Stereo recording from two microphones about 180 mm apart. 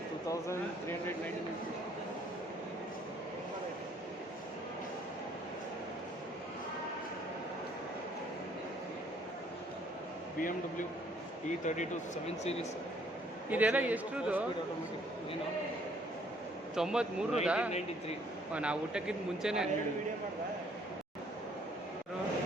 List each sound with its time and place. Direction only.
0.3 s speech: 15° left (ahead or behind)
11.6 s speech: 40° left (ahead or behind)
13.5 s a man's voice: 10° right (ahead or behind)
16.7 s a man's voice: 5° right (ahead or behind)